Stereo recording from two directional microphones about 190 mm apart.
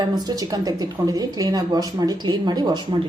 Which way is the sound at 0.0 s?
20° right (ahead or behind).